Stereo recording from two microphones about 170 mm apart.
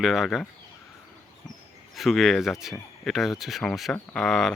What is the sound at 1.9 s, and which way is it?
Speech, centre (ahead or behind).